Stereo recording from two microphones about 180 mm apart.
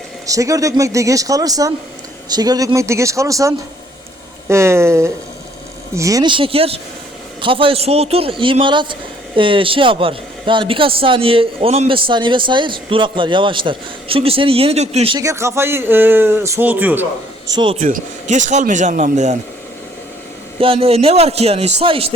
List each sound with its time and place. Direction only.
0.3 s a man's voice: 20° right (ahead or behind); by 15.2 s 35° right (ahead or behind)
15.2 s speech: 15° right (ahead or behind)
17.7 s speech: 45° right (ahead or behind)
20.6 s a man's voice: 30° right (ahead or behind)